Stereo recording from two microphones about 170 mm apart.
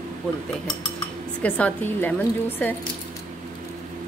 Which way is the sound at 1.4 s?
10° left (ahead or behind).